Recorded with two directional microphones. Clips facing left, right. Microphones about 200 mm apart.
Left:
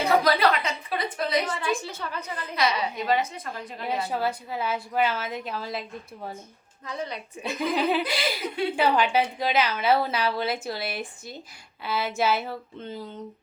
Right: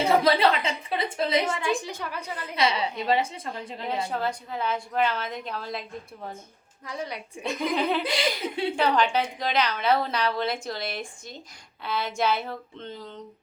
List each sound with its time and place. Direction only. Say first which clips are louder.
0.0 s a woman's voice: right 1 dB; 25° right (ahead or behind); by 2.4 s 10° right (ahead or behind)
2.6 s a woman's voice: even; 25° right (ahead or behind)
4.1 s a woman's voice: left 1 dB; 5° left (ahead or behind)
6.8 s a woman's voice: left 1 dB; 10° right (ahead or behind)
7.4 s a woman's voice: left 1 dB; 5° left (ahead or behind)